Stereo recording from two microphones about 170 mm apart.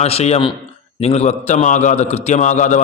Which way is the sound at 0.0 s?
40° left (ahead or behind).